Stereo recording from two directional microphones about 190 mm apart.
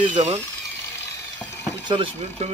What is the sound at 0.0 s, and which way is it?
Speech, 35° right (ahead or behind).